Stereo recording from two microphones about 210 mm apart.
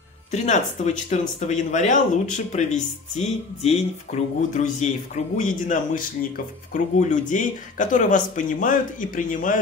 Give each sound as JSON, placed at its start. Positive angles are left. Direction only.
{"t": 1.1, "sound": "speech", "side_deg": 35}